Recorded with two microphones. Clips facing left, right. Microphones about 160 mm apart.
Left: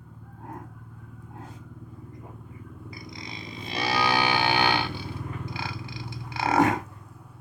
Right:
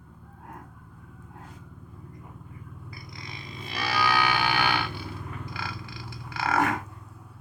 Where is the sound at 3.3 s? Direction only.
25° left (ahead or behind).